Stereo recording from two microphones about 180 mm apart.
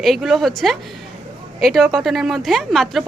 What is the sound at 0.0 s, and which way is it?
Speech, centre (ahead or behind).